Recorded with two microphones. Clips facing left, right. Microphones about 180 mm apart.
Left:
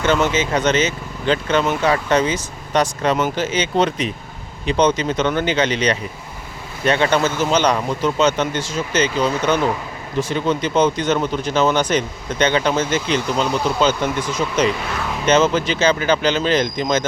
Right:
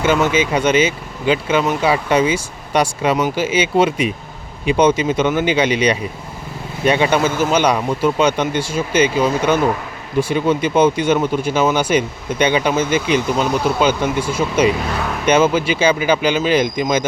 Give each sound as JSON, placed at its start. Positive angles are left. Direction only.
{"t": 0.0, "sound": "speech", "side_deg": -10}